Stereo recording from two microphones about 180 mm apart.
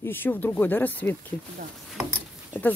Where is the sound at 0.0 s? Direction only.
10° left (ahead or behind).